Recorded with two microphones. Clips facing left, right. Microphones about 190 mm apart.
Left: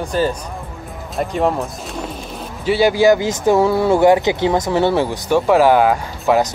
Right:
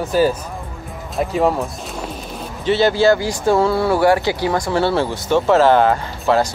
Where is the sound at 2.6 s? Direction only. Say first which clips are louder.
Left 1 dB; 10° left (ahead or behind).